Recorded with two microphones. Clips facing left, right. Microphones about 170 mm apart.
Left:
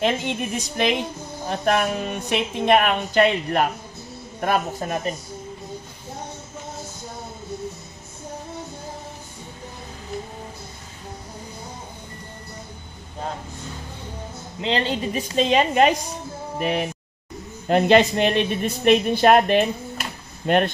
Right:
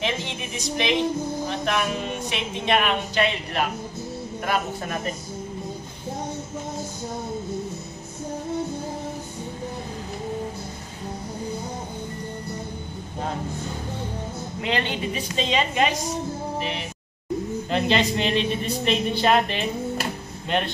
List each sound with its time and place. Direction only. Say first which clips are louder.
0.0 s a woman's voice: left 6 dB; 50° left (ahead or behind)
14.6 s speech: left 3 dB; 30° left (ahead or behind)
15.1 s a woman's voice: left 6 dB; 50° left (ahead or behind)
16.5 s music: left 6 dB; 55° left (ahead or behind)
17.6 s a woman's voice: left 7 dB; 50° left (ahead or behind)